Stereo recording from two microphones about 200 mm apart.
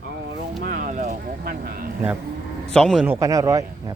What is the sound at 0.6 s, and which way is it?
Vehicle, 45° right (ahead or behind).